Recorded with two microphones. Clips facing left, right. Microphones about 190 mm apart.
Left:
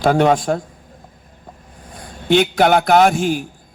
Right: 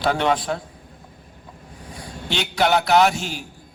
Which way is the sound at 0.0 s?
45° left (ahead or behind).